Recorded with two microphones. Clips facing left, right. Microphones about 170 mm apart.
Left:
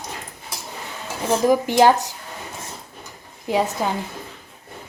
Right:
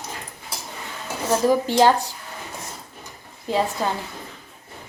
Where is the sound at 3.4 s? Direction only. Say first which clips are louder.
Left 1 dB; 15° left (ahead or behind).